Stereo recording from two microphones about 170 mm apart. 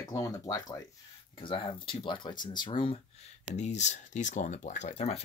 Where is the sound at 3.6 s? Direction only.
45° left (ahead or behind).